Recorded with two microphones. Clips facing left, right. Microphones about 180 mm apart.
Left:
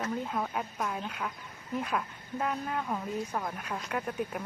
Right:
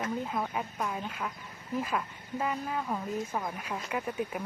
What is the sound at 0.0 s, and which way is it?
Speech, 5° right (ahead or behind).